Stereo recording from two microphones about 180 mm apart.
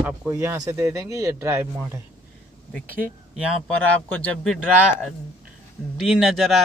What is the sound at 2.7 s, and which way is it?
A man's voice, 5° left (ahead or behind).